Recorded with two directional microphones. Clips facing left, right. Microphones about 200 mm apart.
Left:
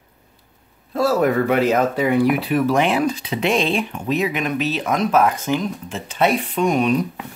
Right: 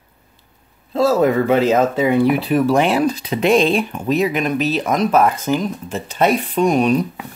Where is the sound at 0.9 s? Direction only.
25° right (ahead or behind).